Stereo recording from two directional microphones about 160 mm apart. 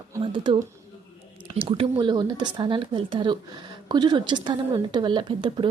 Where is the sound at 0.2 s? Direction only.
30° right (ahead or behind).